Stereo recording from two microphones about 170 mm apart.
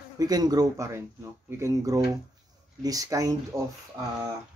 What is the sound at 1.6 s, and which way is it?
Speech, 20° right (ahead or behind).